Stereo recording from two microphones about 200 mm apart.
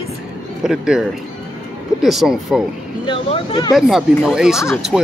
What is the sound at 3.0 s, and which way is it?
Speech, 25° left (ahead or behind).